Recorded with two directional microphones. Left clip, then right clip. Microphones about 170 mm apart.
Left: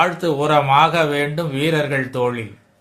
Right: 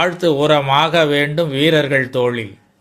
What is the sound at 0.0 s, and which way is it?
Speech, 30° right (ahead or behind).